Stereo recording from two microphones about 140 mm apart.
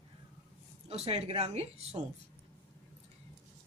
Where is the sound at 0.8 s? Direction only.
45° right (ahead or behind).